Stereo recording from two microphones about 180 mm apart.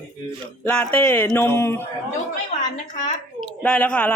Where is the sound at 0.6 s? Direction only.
5° left (ahead or behind).